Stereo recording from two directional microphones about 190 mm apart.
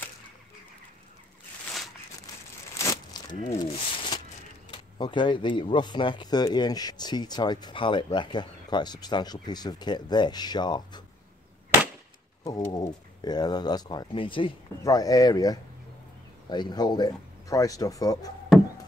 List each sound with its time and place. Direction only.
2.8 s a sound: 15° left (ahead or behind)
3.5 s speech: 25° left (ahead or behind)
12.4 s speech: 20° left (ahead or behind)